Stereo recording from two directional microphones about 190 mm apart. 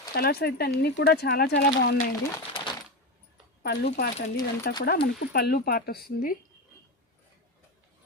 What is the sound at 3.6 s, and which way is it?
Speech, 60° left (ahead or behind).